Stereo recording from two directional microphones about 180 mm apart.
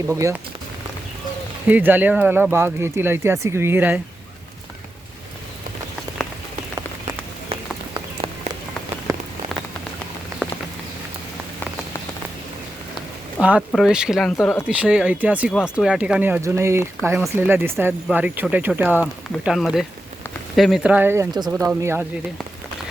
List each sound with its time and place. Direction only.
0.1 s speech: 15° right (ahead or behind)
1.6 s speech: 10° right (ahead or behind)
7.5 s a sound: 30° right (ahead or behind)
9.1 s rain on surface: 15° right (ahead or behind)
13.4 s speech: 5° right (ahead or behind)